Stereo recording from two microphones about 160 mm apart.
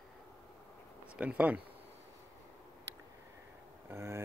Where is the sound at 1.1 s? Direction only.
10° right (ahead or behind).